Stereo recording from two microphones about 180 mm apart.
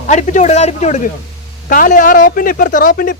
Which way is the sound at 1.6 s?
50° left (ahead or behind).